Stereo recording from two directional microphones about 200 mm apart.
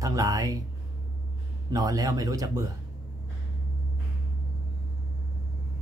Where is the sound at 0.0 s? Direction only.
15° right (ahead or behind).